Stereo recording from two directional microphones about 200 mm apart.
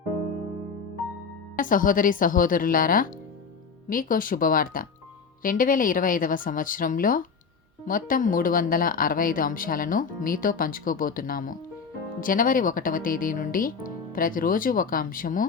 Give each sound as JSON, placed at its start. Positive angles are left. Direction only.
{"t": 1.5, "sound": "speech", "side_deg": 45}